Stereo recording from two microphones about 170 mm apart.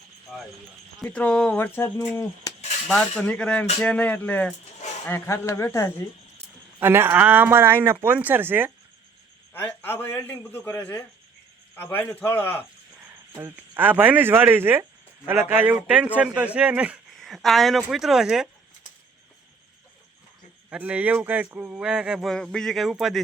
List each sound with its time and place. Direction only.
1.0 s a man's voice: 5° left (ahead or behind)
2.8 s a man's voice: 5° left (ahead or behind)
4.8 s a sound: 45° left (ahead or behind)
5.0 s a man's voice: 15° left (ahead or behind)
6.7 s speech: 15° right (ahead or behind)
9.5 s a man's voice: 10° left (ahead or behind)
13.3 s speech: 15° right (ahead or behind)
20.7 s speech: 10° right (ahead or behind)